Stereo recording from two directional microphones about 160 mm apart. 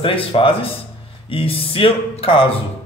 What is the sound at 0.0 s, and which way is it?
A man's voice, 35° left (ahead or behind).